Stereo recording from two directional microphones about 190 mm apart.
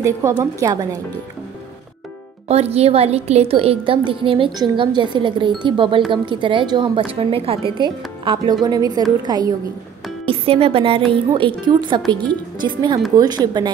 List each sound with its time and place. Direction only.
0.4 s a woman's voice: 20° right (ahead or behind)
2.4 s a woman's voice: 35° right (ahead or behind)